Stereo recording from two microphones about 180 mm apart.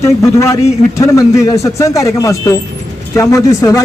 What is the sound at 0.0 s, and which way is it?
Speech, 15° left (ahead or behind).